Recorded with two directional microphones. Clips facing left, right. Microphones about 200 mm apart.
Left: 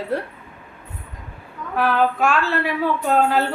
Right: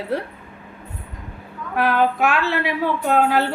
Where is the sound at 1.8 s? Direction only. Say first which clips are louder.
Even; 15° right (ahead or behind).